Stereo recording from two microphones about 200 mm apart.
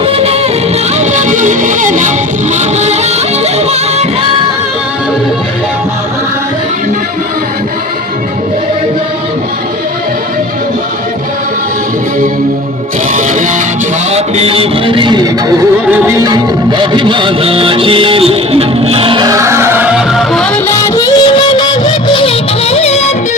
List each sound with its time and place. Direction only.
0.0 s music: 30° right (ahead or behind)
13.1 s music: 40° right (ahead or behind)
14.1 s a sound: 30° right (ahead or behind)
15.9 s music: 5° right (ahead or behind)
16.2 s music: 20° right (ahead or behind); by 20.5 s centre (ahead or behind)
20.7 s music: 15° left (ahead or behind); by 23.1 s 35° left (ahead or behind)